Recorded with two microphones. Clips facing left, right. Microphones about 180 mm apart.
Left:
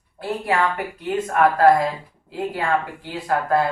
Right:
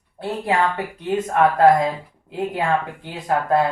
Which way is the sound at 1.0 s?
20° right (ahead or behind).